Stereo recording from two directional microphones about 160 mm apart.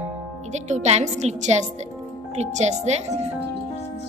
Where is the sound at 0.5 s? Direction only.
45° right (ahead or behind).